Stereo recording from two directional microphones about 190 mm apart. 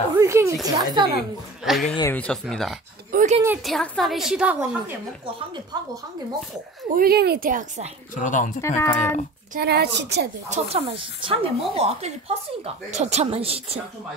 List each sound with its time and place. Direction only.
0.2 s a sound: 15° right (ahead or behind)
0.7 s a woman's voice: 20° right (ahead or behind)
1.6 s a woman's voice: centre (ahead or behind)
3.1 s a sound: 45° right (ahead or behind)
3.6 s a woman's voice: 5° left (ahead or behind)
7.0 s a woman's voice: 55° right (ahead or behind)
8.2 s speech: 40° left (ahead or behind)
8.5 s speech: 15° left (ahead or behind)
9.5 s a woman's voice: 55° right (ahead or behind)
10.5 s speech: 35° right (ahead or behind)